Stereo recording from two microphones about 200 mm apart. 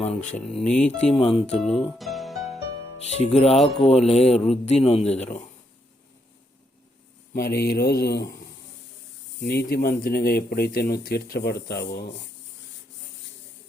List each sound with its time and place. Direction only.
0.0 s speech: 40° left (ahead or behind)
0.3 s speech: 5° left (ahead or behind)
0.9 s speech: 30° left (ahead or behind)
2.0 s music: centre (ahead or behind)
3.0 s speech: 35° left (ahead or behind)
7.3 s speech: 50° left (ahead or behind)
9.4 s speech: 55° left (ahead or behind)